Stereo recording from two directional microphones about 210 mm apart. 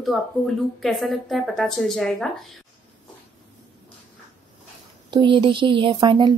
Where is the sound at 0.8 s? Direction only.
Centre (ahead or behind).